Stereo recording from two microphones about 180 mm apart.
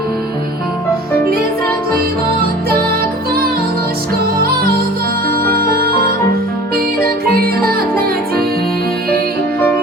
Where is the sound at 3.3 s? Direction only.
55° right (ahead or behind).